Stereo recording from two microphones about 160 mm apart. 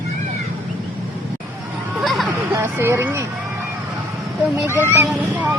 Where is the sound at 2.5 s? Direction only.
15° right (ahead or behind).